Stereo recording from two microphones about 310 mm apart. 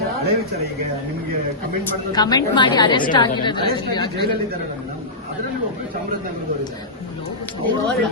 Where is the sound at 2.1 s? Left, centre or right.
Centre.